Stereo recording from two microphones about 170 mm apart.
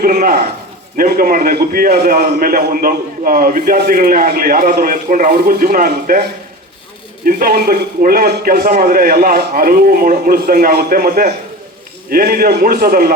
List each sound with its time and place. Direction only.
0.0 s a man's voice: 55° right (ahead or behind)
7.3 s a man's voice: 60° right (ahead or behind)